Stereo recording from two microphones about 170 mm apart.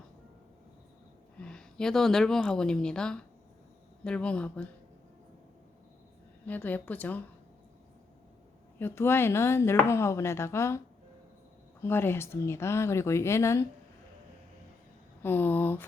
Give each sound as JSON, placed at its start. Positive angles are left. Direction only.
{"t": 1.4, "sound": "a woman's voice", "side_deg": 5}
{"t": 6.4, "sound": "speech", "side_deg": 10}
{"t": 8.8, "sound": "speech", "side_deg": 15}
{"t": 15.2, "sound": "speech", "side_deg": 10}